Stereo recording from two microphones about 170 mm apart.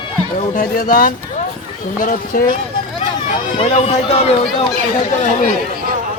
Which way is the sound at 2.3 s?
55° left (ahead or behind).